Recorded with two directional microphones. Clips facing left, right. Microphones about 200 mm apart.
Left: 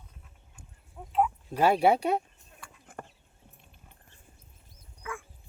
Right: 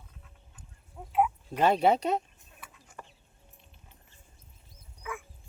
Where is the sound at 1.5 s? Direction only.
10° left (ahead or behind).